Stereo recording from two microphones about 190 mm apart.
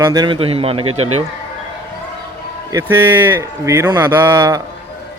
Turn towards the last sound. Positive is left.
turn(degrees=-15)  # may be behind; listen again after turning